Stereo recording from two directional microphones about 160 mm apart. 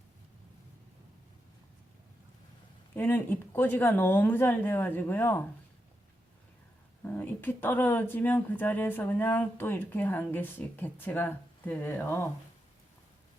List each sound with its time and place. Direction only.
2.9 s speech: 10° left (ahead or behind)
7.0 s speech: 10° left (ahead or behind)